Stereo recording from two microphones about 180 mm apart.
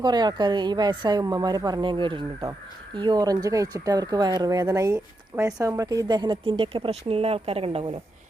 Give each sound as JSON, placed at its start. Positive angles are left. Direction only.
{"t": 0.0, "sound": "speech", "side_deg": -25}